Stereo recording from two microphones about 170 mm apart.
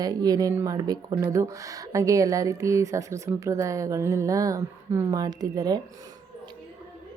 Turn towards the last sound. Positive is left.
turn(degrees=-20)  # may be behind; listen again after turning